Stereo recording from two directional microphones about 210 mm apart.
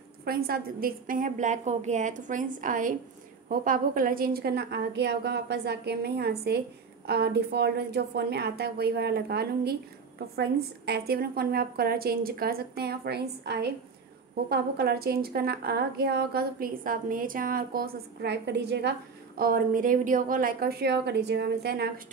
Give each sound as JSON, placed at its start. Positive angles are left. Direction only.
{"t": 0.2, "sound": "a woman's voice", "side_deg": -45}
{"t": 10.9, "sound": "a woman's voice", "side_deg": -45}